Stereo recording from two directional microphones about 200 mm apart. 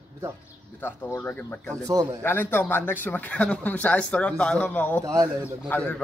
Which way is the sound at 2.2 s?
10° left (ahead or behind).